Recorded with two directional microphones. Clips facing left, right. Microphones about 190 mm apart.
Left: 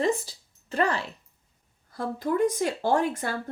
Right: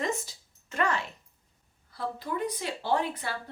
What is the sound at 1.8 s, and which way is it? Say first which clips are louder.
A woman's voice: left 6 dB; 45° left (ahead or behind).